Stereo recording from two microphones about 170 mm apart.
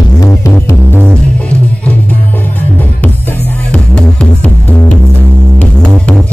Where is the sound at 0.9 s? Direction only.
10° right (ahead or behind).